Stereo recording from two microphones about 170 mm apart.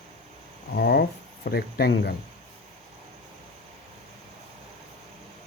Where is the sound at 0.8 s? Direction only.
70° left (ahead or behind).